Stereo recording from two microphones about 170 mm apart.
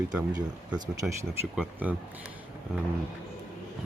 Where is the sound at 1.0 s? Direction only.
15° right (ahead or behind).